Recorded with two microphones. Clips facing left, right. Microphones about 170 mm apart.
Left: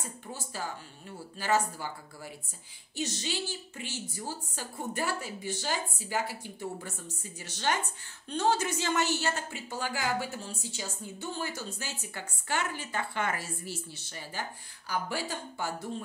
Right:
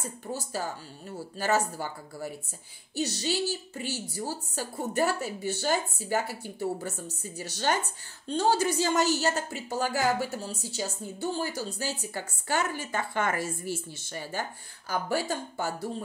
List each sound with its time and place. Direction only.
0.3 s a woman's voice: 40° right (ahead or behind)